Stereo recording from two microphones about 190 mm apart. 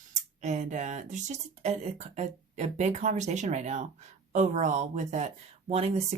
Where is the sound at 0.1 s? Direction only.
40° right (ahead or behind).